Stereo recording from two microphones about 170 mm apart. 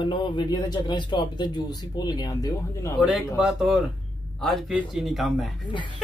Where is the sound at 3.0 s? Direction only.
Centre (ahead or behind).